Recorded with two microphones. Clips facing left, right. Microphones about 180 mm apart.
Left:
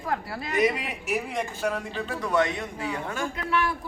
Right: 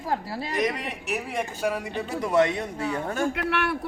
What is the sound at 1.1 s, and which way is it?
Speech, 5° right (ahead or behind).